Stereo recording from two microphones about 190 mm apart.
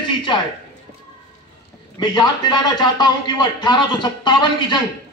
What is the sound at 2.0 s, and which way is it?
A man's voice, 20° left (ahead or behind).